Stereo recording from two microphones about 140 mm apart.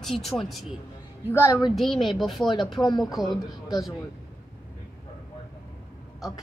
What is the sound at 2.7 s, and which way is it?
Speech, 35° left (ahead or behind).